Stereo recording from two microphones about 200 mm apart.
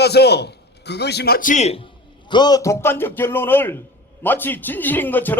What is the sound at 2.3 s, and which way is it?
A man's voice, 20° left (ahead or behind).